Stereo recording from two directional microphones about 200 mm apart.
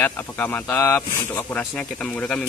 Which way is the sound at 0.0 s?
10° left (ahead or behind).